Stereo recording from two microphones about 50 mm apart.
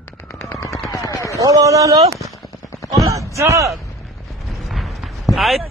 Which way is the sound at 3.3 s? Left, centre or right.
Right.